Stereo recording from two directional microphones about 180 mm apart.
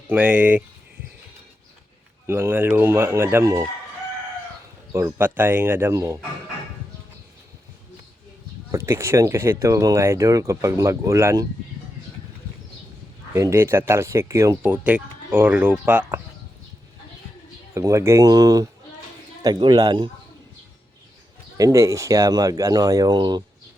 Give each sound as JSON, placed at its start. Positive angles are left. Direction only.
{"t": 0.1, "sound": "speech", "side_deg": -10}
{"t": 2.2, "sound": "speech", "side_deg": -10}
{"t": 4.9, "sound": "speech", "side_deg": -15}
{"t": 8.7, "sound": "speech", "side_deg": -15}
{"t": 13.3, "sound": "speech", "side_deg": -15}
{"t": 17.7, "sound": "speech", "side_deg": -15}
{"t": 21.6, "sound": "speech", "side_deg": -15}